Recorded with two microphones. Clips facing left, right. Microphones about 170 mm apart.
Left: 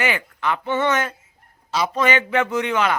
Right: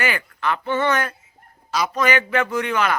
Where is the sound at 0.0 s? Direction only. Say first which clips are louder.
Left 1 dB; 20° left (ahead or behind).